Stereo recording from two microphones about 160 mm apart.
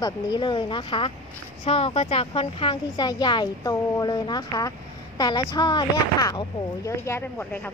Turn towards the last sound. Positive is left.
turn(degrees=15)  # may be behind; listen again after turning